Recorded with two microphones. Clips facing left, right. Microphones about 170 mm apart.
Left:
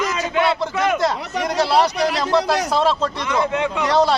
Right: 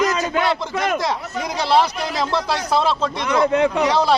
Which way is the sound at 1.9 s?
90° left.